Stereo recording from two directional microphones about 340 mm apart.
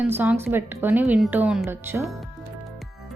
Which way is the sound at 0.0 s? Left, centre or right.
Centre.